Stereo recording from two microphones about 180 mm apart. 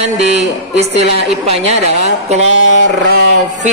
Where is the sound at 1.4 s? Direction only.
35° right (ahead or behind).